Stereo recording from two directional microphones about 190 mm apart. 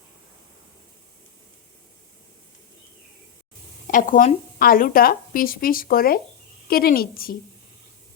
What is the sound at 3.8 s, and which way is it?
Speech, 45° left (ahead or behind).